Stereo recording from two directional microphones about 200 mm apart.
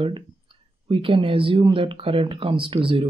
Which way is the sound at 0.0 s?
25° right (ahead or behind).